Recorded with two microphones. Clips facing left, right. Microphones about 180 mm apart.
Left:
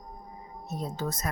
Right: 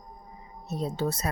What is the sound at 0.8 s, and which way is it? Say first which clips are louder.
Speech: right 4 dB; 30° right (ahead or behind).